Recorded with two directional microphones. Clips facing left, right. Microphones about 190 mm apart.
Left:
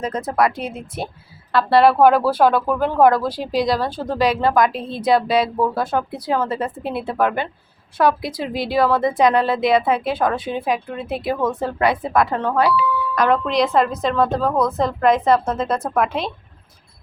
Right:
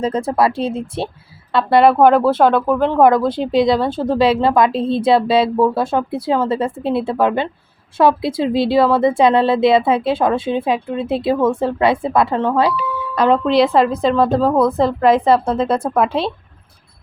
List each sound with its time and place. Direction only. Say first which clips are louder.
0.0 s a woman's voice: right 3 dB; 30° right (ahead or behind)
1.7 s speech: right 2 dB; centre (ahead or behind)
3.2 s a woman's voice: right 5 dB; 25° right (ahead or behind)